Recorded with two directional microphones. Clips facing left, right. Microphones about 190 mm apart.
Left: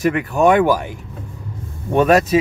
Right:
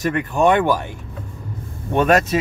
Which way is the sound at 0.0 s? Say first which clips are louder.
Left 2 dB; 5° left (ahead or behind).